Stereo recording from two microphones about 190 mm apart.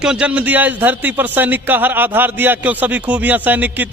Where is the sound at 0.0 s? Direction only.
5° right (ahead or behind).